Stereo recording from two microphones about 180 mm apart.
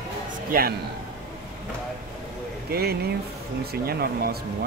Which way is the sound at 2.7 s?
60° right (ahead or behind).